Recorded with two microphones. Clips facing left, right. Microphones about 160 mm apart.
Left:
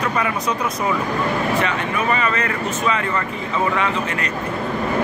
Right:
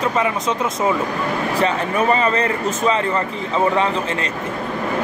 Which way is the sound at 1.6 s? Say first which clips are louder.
Right 4 dB; 35° right (ahead or behind).